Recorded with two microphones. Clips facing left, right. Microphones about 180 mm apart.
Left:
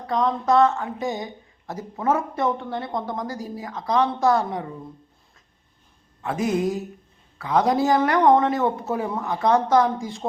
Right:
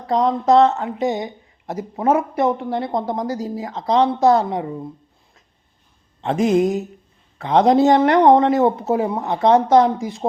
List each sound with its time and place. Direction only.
0.1 s a woman's voice: 20° right (ahead or behind)
6.5 s a woman's voice: 25° right (ahead or behind)